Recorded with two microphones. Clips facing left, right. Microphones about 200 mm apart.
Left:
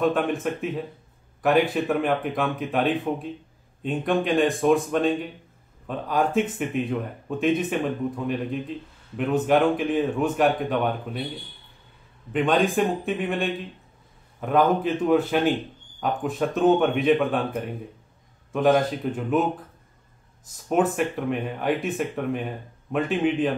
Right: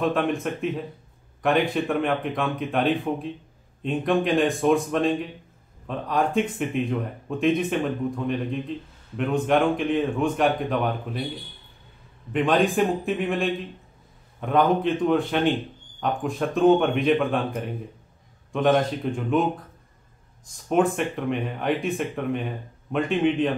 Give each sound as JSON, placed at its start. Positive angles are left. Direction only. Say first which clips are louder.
{"t": 0.0, "sound": "speech", "louder": "left 1 dB", "side_deg": 0}
{"t": 12.3, "sound": "speech", "louder": "even", "side_deg": 0}
{"t": 20.6, "sound": "speech", "louder": "even", "side_deg": 5}